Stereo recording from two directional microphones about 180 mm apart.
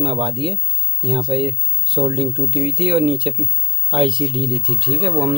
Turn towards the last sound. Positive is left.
turn(degrees=-25)  # may be behind; listen again after turning